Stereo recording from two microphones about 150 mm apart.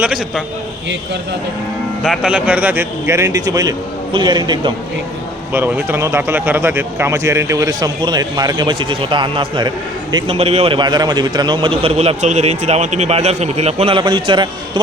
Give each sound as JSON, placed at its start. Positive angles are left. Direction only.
{"t": 0.0, "sound": "a man's voice", "side_deg": -5}
{"t": 2.0, "sound": "speech", "side_deg": -5}
{"t": 5.5, "sound": "speech", "side_deg": -15}
{"t": 10.2, "sound": "a man's voice", "side_deg": -40}
{"t": 10.8, "sound": "a man's voice", "side_deg": -30}